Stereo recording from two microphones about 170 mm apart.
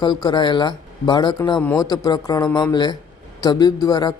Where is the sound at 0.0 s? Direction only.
25° left (ahead or behind).